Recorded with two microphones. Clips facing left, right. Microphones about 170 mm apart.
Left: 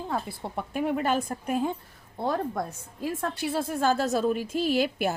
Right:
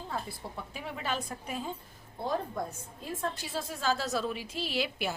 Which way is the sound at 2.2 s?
75° left (ahead or behind).